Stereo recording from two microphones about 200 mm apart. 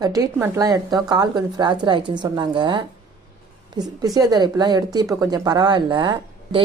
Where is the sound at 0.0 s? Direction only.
15° right (ahead or behind).